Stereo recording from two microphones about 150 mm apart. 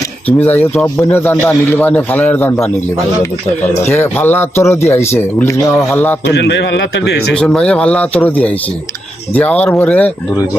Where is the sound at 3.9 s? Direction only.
15° left (ahead or behind).